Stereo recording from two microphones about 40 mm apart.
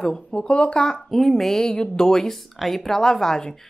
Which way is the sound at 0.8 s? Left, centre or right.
Centre.